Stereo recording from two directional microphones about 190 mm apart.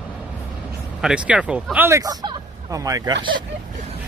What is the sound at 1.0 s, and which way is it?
Speech, 5° right (ahead or behind).